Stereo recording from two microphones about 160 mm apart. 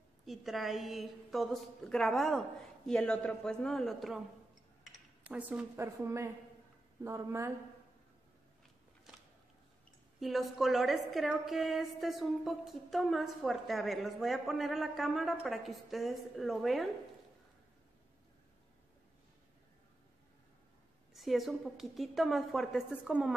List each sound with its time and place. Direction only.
0.2 s a woman's voice: centre (ahead or behind); by 7.5 s 15° right (ahead or behind)
10.2 s a woman's voice: centre (ahead or behind)
21.1 s a woman's voice: centre (ahead or behind)